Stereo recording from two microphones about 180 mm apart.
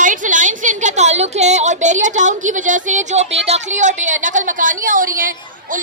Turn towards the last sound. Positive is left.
turn(degrees=-50)  # may be behind; listen again after turning